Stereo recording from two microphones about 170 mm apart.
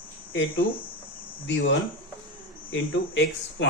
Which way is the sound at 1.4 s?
90° left.